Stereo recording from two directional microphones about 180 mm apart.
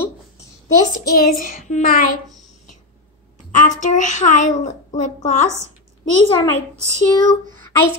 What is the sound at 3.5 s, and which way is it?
Child singing, 45° left (ahead or behind).